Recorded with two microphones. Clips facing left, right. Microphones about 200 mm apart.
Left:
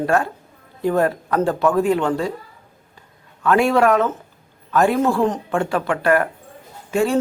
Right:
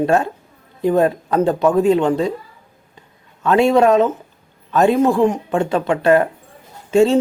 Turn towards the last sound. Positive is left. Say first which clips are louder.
# right 6 dB
turn(degrees=-25)  # may be behind; listen again after turning